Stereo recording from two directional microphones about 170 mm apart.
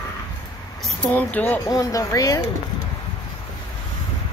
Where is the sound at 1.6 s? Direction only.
20° left (ahead or behind).